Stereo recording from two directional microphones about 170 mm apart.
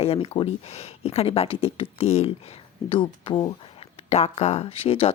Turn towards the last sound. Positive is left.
turn(degrees=35)  # may be behind; listen again after turning